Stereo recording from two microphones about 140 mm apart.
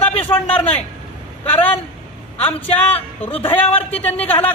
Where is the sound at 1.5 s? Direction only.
15° left (ahead or behind).